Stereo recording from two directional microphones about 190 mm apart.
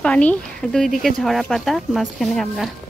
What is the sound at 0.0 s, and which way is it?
Speech, 5° left (ahead or behind).